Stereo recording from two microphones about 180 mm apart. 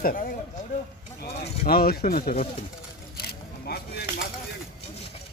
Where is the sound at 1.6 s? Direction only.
55° left (ahead or behind).